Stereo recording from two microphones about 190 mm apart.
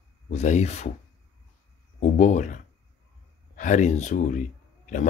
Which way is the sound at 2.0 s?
40° left (ahead or behind).